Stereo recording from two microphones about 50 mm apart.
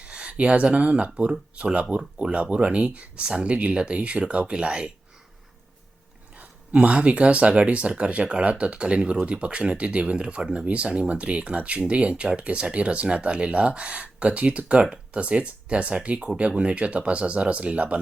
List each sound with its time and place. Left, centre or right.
0.0 s speech: right
6.3 s speech: right